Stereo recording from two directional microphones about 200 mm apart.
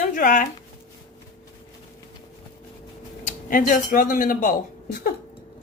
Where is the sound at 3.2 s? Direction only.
40° left (ahead or behind).